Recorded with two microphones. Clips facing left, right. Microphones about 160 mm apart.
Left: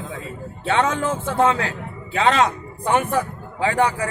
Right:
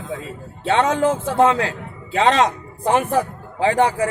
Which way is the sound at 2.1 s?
25° right (ahead or behind).